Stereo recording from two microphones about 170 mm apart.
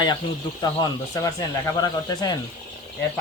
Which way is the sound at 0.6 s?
20° left (ahead or behind).